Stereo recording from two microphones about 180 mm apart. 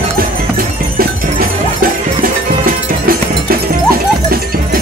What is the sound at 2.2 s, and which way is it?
Music, 55° right (ahead or behind).